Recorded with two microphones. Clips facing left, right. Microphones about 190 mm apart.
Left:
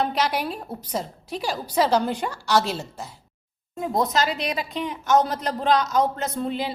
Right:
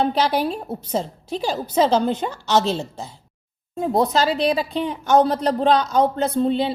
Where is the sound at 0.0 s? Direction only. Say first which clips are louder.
Right 5 dB; 30° right (ahead or behind).